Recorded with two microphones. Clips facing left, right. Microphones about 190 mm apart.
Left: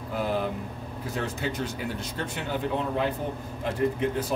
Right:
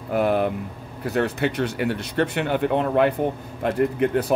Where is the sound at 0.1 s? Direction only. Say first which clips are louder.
Right 8 dB; 65° right (ahead or behind).